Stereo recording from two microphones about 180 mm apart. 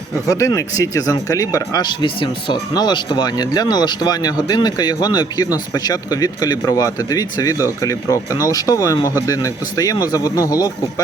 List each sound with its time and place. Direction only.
0.3 s speech: 15° left (ahead or behind)